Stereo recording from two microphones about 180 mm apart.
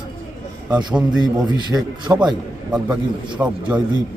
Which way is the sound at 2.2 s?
5° right (ahead or behind).